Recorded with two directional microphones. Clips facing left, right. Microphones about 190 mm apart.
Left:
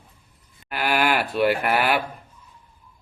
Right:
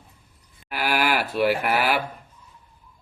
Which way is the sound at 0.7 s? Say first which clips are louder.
Left 1 dB; 5° right (ahead or behind).